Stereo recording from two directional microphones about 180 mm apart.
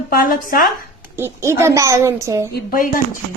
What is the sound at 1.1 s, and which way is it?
A woman's voice, 15° right (ahead or behind).